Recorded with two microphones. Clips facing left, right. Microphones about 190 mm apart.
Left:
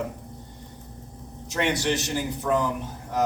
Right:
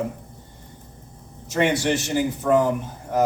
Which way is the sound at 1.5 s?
50° right (ahead or behind).